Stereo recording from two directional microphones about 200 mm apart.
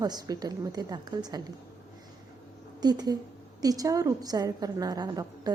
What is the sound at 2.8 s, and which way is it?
A woman's voice, 20° right (ahead or behind).